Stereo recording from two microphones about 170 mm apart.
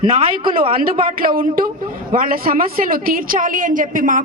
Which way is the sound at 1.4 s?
60° right (ahead or behind).